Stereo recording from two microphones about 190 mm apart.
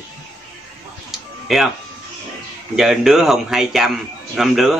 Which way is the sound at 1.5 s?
Centre (ahead or behind).